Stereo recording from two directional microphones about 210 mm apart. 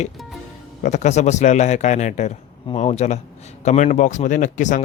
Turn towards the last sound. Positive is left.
turn(degrees=35)  # may be behind; listen again after turning